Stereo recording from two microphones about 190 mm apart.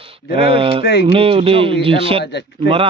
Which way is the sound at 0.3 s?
30° right (ahead or behind).